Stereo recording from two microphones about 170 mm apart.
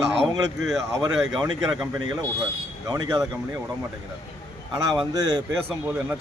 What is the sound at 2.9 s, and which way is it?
Speech, 25° right (ahead or behind).